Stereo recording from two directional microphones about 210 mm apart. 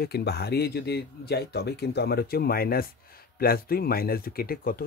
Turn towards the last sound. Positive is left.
turn(degrees=45)  # may be behind; listen again after turning